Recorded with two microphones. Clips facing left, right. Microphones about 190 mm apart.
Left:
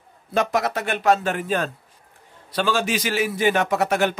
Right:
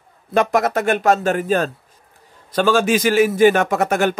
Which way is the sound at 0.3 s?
55° right (ahead or behind).